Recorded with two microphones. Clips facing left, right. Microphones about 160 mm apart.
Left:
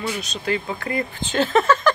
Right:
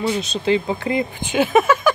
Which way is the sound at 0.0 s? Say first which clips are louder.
Right 6 dB; 25° right (ahead or behind).